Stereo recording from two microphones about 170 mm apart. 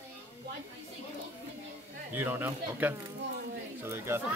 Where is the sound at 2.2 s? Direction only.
10° right (ahead or behind).